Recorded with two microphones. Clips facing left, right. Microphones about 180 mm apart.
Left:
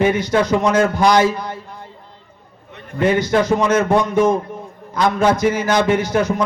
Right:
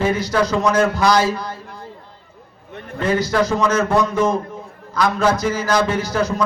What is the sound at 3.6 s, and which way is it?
Speech, 25° left (ahead or behind).